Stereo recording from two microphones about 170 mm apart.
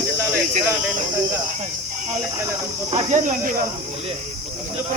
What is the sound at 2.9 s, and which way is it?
Speech, 45° right (ahead or behind).